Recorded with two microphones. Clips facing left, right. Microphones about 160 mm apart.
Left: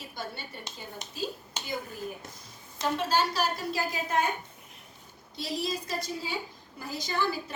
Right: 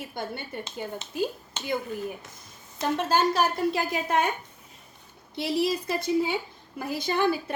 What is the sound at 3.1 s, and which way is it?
Speech, 50° right (ahead or behind).